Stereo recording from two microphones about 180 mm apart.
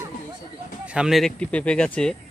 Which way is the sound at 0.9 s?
5° right (ahead or behind).